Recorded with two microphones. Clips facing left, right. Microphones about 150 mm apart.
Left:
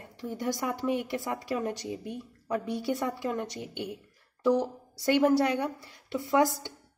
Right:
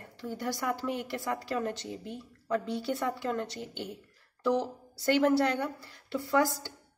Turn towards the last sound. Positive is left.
turn(degrees=20)  # may be behind; listen again after turning